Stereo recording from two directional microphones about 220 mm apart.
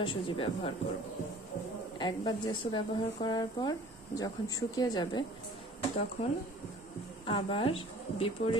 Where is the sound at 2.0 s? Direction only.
20° left (ahead or behind).